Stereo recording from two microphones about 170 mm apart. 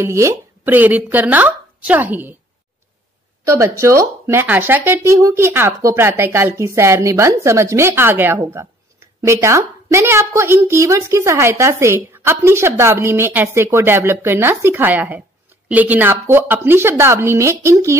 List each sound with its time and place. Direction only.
0.0 s a woman's voice: 15° right (ahead or behind)
3.4 s a woman's voice: 20° right (ahead or behind)